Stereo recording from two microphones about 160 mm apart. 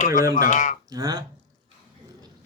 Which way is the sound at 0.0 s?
55° left (ahead or behind).